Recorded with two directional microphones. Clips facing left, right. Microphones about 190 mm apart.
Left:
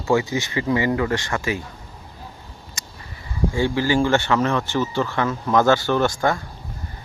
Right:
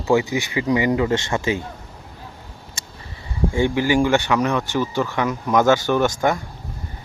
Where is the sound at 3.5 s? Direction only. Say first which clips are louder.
Right 2 dB; 20° right (ahead or behind).